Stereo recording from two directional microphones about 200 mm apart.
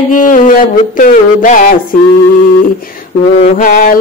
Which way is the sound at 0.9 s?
40° left (ahead or behind).